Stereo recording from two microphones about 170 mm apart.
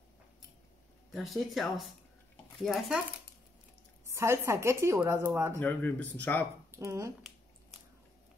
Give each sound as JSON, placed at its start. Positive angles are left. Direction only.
{"t": 1.1, "sound": "speech", "side_deg": 0}
{"t": 4.1, "sound": "a woman's voice", "side_deg": -15}
{"t": 5.6, "sound": "speech", "side_deg": 10}
{"t": 6.7, "sound": "speech", "side_deg": -15}